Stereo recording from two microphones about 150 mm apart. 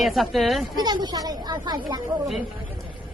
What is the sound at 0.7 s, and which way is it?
Speech, 30° right (ahead or behind).